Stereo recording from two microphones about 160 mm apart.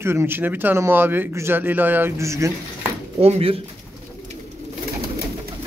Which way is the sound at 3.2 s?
40° right (ahead or behind).